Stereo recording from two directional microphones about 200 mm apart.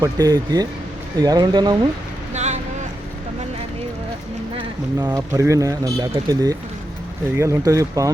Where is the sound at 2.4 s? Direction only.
35° right (ahead or behind).